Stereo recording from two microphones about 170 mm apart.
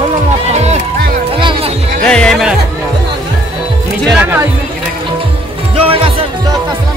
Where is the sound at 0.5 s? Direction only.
40° right (ahead or behind).